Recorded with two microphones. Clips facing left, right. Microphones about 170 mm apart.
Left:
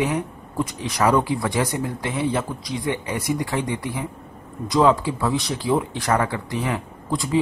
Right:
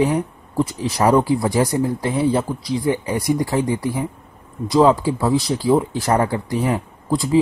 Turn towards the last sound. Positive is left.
turn(degrees=-35)  # may be behind; listen again after turning